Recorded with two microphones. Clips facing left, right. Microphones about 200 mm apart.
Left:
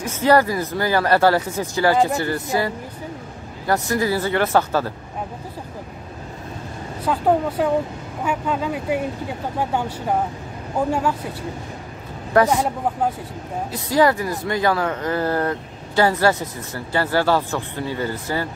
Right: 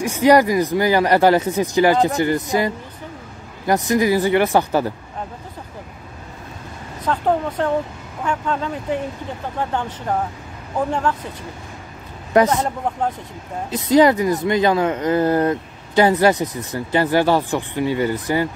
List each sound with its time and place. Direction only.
0.0 s speech: 15° right (ahead or behind)
7.1 s speech: 10° left (ahead or behind)
12.4 s speech: 5° left (ahead or behind)
13.7 s speech: 20° right (ahead or behind)